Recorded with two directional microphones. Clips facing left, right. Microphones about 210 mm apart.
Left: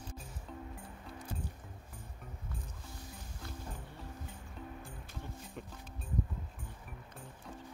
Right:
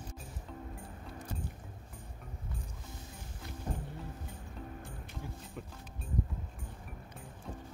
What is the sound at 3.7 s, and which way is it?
Music, 35° right (ahead or behind).